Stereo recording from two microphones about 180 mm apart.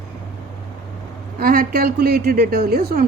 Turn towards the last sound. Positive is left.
turn(degrees=-60)  # may be behind; listen again after turning